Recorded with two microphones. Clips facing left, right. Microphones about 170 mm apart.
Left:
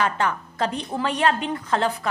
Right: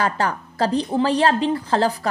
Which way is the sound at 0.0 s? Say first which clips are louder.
Right 1 dB; 35° right (ahead or behind).